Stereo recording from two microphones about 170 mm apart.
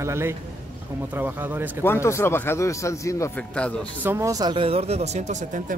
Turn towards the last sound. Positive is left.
turn(degrees=-45)  # may be behind; listen again after turning